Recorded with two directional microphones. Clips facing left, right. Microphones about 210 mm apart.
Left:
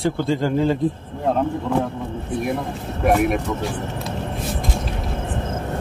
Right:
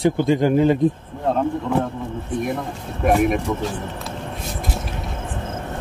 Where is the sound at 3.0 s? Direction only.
Centre (ahead or behind).